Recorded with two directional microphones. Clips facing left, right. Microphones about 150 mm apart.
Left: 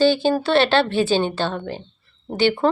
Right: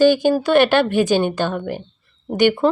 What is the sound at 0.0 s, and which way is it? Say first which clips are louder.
Speech: right 3 dB; 15° right (ahead or behind).